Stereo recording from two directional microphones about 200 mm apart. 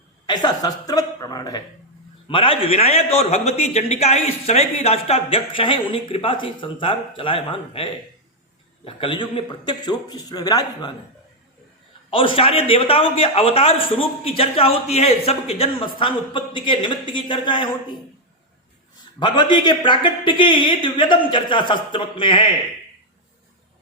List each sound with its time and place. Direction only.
0.3 s a man's voice: 20° left (ahead or behind)
12.1 s a man's voice: 25° left (ahead or behind)
19.2 s a man's voice: 20° left (ahead or behind)